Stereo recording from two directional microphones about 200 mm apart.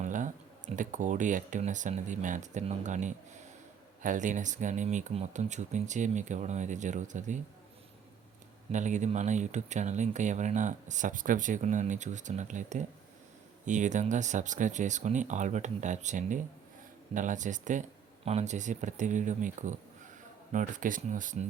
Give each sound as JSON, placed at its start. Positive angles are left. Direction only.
{"t": 0.0, "sound": "a sound", "side_deg": -40}
{"t": 0.8, "sound": "speech", "side_deg": -40}
{"t": 8.7, "sound": "speech", "side_deg": -35}